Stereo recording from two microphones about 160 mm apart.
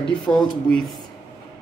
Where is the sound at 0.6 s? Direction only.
5° left (ahead or behind).